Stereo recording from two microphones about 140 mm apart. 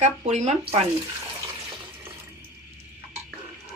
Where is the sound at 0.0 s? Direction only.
55° right (ahead or behind).